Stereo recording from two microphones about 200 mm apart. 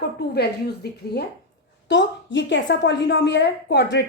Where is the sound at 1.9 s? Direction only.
65° left (ahead or behind).